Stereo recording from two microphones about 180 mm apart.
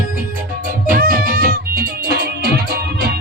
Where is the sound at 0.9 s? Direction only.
55° right (ahead or behind).